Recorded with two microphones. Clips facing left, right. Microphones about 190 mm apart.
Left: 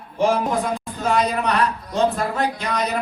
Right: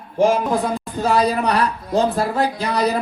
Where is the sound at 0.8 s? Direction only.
35° right (ahead or behind).